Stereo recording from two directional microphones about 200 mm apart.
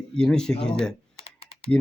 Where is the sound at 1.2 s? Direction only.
30° left (ahead or behind).